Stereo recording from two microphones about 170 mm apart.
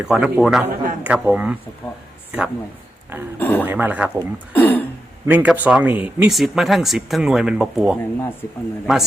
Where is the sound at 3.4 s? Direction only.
10° left (ahead or behind).